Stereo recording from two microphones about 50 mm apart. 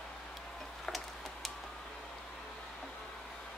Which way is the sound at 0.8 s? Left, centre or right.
Centre.